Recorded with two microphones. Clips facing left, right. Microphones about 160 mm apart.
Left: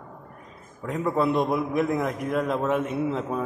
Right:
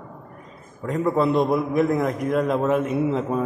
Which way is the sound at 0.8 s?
Centre (ahead or behind).